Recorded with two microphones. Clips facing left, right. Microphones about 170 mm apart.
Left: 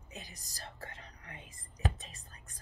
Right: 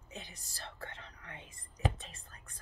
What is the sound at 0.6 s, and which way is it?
Whispering, 35° left (ahead or behind).